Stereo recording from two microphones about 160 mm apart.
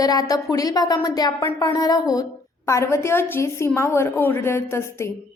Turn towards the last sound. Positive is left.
turn(degrees=15)  # may be behind; listen again after turning